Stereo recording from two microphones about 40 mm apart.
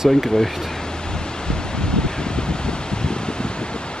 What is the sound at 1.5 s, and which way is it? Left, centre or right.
Wind, left.